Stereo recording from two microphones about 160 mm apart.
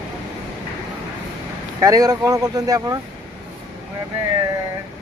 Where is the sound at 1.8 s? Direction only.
20° right (ahead or behind).